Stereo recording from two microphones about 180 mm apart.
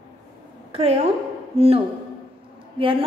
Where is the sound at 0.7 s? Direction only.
35° right (ahead or behind).